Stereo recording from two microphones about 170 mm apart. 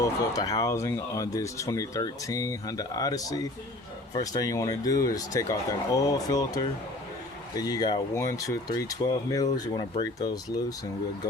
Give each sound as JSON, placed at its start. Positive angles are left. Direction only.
{"t": 0.0, "sound": "speech", "side_deg": 20}